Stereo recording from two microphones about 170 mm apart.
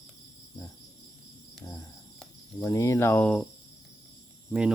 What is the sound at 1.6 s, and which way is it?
Cricket, 15° left (ahead or behind).